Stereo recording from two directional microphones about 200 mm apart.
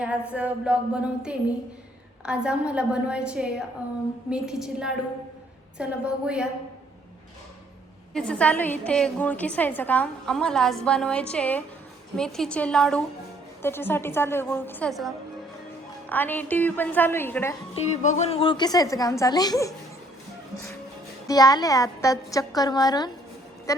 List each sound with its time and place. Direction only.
0.0 s a woman's voice: 5° right (ahead or behind)
8.1 s a woman's voice: 5° left (ahead or behind)
17.8 s a woman's voice: 35° left (ahead or behind); by 19.7 s 15° left (ahead or behind)
21.2 s a woman's voice: 20° left (ahead or behind)